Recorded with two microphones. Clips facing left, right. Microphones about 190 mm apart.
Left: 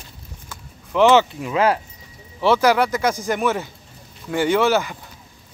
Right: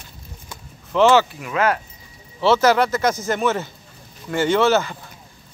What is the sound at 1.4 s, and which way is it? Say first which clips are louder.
Speech: left 2 dB; 30° left (ahead or behind).